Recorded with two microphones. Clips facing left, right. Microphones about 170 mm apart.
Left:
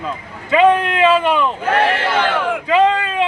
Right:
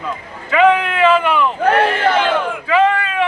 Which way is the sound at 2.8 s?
15° left (ahead or behind).